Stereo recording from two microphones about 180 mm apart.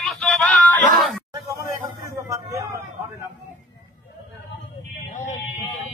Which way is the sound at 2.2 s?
20° right (ahead or behind).